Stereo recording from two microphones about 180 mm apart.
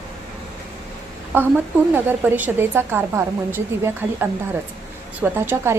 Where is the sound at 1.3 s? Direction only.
10° right (ahead or behind).